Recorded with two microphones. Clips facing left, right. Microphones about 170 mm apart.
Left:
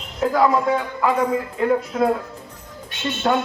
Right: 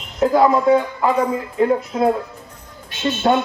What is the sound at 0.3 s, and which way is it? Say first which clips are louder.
Music: right 4 dB; 30° right (ahead or behind).